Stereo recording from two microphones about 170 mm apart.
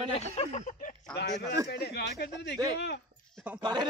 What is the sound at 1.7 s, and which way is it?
Speech, 75° left (ahead or behind).